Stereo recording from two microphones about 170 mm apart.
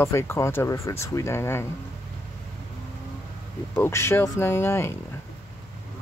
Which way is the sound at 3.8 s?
15° left (ahead or behind).